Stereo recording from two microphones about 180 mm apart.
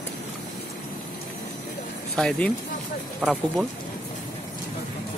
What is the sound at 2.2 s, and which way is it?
Speech, 5° left (ahead or behind).